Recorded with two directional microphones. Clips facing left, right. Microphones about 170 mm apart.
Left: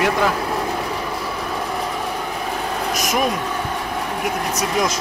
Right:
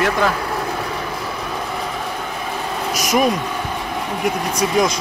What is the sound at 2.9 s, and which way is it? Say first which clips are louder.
Vehicle: right 4 dB; centre (ahead or behind).